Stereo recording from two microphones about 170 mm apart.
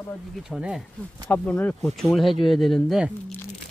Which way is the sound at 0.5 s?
5° right (ahead or behind).